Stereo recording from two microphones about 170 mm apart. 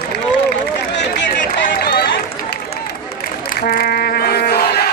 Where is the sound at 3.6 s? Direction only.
65° left (ahead or behind).